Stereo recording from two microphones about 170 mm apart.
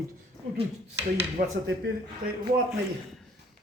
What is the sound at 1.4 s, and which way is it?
Speech, 50° right (ahead or behind).